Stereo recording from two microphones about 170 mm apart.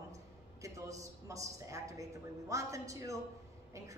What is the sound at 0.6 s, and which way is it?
A woman's voice, 20° right (ahead or behind).